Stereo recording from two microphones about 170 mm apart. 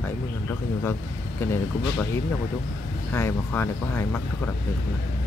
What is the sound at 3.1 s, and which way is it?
Speech, 15° left (ahead or behind).